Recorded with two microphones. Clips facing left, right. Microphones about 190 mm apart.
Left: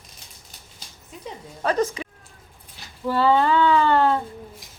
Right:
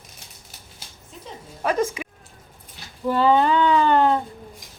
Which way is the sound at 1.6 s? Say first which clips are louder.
Even; 10° right (ahead or behind).